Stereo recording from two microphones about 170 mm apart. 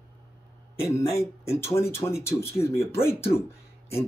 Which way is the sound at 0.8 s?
15° left (ahead or behind).